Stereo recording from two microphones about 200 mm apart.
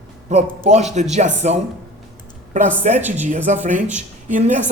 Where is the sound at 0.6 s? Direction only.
35° right (ahead or behind).